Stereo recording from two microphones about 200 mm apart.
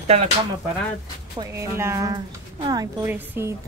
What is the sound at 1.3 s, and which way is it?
A woman's voice, 15° right (ahead or behind).